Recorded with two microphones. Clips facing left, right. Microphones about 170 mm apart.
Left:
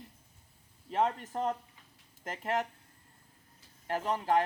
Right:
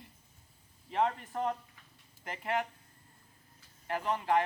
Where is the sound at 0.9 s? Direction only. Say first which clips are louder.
Left 1 dB; 40° left (ahead or behind).